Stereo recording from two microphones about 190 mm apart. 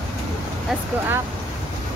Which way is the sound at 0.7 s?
Centre (ahead or behind).